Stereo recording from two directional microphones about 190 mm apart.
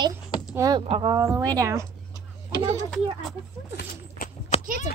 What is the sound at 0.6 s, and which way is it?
Speech, 20° right (ahead or behind).